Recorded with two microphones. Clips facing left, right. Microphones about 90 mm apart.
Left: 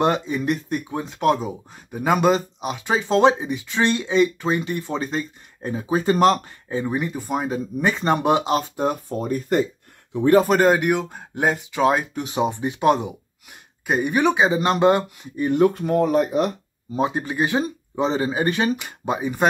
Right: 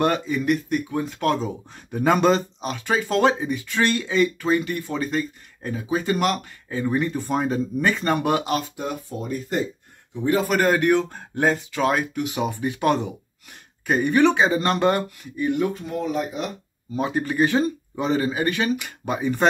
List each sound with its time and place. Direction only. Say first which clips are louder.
0.0 s speech: left 1 dB; 25° left (ahead or behind)
7.9 s speech: left 5 dB; 20° left (ahead or behind)
8.7 s speech: left 6 dB; 40° left (ahead or behind)
10.6 s speech: left 1 dB; 15° left (ahead or behind)
15.4 s speech: left 5 dB; 50° left (ahead or behind)
16.9 s speech: left 1 dB; 20° left (ahead or behind)